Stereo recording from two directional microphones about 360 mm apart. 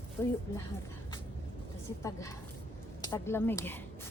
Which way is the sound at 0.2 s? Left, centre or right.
Centre.